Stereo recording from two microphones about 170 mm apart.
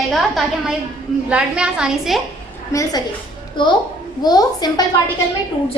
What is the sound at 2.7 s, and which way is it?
Speech, 15° left (ahead or behind).